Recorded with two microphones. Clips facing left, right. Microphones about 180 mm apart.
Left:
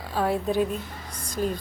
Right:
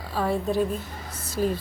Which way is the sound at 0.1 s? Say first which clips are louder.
Even; centre (ahead or behind).